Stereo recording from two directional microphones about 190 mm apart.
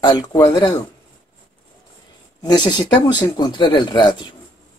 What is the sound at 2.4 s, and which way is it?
Speech, 20° left (ahead or behind).